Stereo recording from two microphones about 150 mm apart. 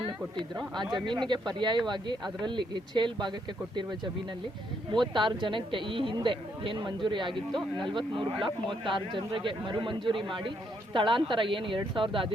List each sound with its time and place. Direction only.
0.0 s a man's voice: 30° right (ahead or behind)
5.1 s a man's voice: 35° right (ahead or behind)